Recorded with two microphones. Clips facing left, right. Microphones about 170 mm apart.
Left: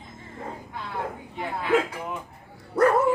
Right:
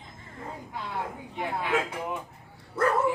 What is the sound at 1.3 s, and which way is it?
Speech, 15° right (ahead or behind).